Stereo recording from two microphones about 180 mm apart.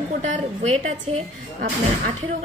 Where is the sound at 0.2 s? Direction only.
40° right (ahead or behind).